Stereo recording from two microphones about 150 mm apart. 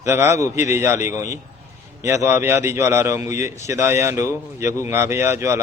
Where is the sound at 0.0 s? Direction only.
20° right (ahead or behind).